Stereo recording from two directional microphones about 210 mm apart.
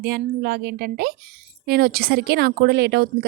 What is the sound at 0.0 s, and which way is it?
A woman's voice, 45° right (ahead or behind).